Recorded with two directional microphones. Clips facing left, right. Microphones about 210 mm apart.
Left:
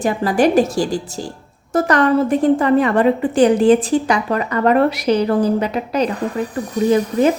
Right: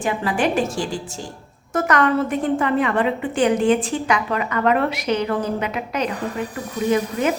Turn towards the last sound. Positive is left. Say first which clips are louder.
# left 5 dB
turn(degrees=35)  # may be behind; listen again after turning